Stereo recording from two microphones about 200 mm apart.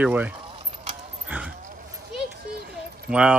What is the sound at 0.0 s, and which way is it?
Speech, 5° right (ahead or behind).